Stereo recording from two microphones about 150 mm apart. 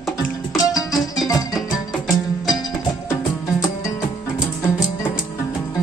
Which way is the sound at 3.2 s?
25° left (ahead or behind).